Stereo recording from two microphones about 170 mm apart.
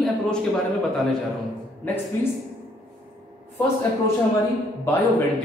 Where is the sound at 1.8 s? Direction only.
10° left (ahead or behind).